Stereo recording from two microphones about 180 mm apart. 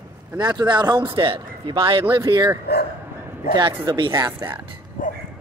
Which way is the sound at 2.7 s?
65° left (ahead or behind).